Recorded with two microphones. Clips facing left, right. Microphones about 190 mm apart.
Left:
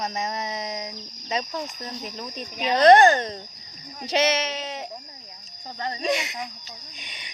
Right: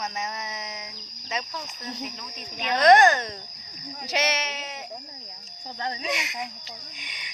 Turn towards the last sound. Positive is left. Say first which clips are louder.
# left 1 dB
turn(degrees=30)  # may be behind; listen again after turning